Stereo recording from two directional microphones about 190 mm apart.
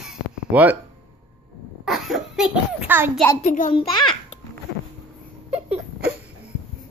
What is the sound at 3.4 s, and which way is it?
Speech, 45° left (ahead or behind).